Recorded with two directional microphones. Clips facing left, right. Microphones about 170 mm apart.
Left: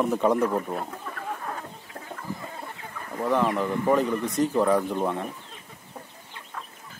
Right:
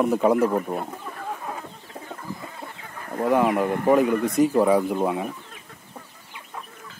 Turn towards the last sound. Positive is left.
turn(degrees=-10)  # may be behind; listen again after turning